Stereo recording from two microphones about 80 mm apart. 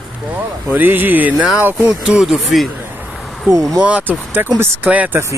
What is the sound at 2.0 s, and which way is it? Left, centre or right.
Speech, centre.